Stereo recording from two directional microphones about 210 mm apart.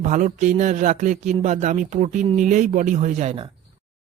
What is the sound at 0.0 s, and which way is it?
Speech, 35° right (ahead or behind).